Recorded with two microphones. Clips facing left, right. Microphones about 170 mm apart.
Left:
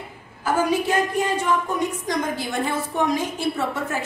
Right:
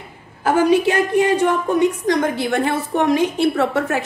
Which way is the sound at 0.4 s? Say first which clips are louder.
Right 6 dB; 70° right (ahead or behind).